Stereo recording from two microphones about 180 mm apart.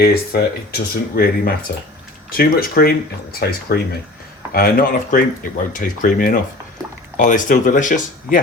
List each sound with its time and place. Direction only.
0.0 s speech: 55° left (ahead or behind)